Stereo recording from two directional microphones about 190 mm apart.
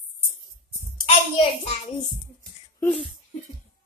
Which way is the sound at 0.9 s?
30° left (ahead or behind).